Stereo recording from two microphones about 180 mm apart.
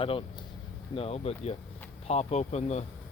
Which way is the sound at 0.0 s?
30° left (ahead or behind).